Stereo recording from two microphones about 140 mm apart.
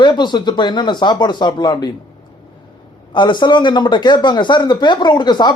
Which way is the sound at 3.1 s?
35° left (ahead or behind).